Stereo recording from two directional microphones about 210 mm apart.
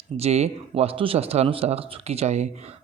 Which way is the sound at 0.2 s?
30° right (ahead or behind).